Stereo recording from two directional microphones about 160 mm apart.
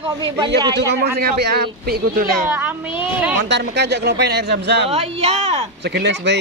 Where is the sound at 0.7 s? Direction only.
80° right.